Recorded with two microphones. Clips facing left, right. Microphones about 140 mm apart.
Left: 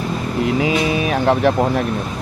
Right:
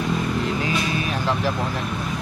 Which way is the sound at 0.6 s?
90° left.